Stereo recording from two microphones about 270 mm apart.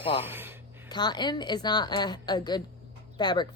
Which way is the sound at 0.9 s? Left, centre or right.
Centre.